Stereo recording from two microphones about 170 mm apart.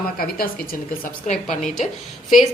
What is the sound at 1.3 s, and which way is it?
Speech, 45° left (ahead or behind).